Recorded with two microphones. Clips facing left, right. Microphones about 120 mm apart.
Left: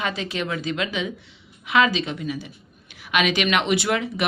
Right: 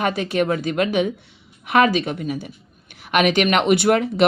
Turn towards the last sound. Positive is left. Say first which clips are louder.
# right 7 dB
turn(degrees=-55)  # may be behind; listen again after turning